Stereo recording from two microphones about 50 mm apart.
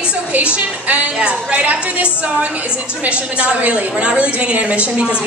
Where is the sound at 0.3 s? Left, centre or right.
Right.